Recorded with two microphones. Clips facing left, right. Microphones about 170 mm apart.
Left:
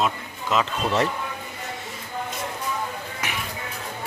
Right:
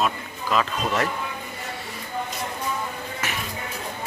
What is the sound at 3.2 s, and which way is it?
Music, 15° left (ahead or behind).